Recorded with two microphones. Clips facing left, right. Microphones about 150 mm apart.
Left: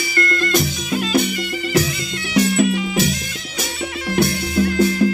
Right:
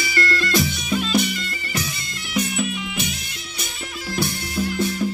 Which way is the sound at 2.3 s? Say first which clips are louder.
Left 8 dB; 90° left.